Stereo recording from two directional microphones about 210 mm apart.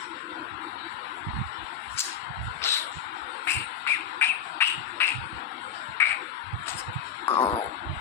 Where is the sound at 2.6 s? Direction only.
10° left (ahead or behind).